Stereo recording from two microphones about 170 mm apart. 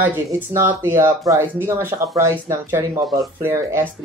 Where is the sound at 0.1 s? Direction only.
15° right (ahead or behind).